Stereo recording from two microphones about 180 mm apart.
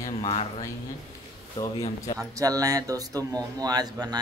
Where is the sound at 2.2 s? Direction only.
20° right (ahead or behind).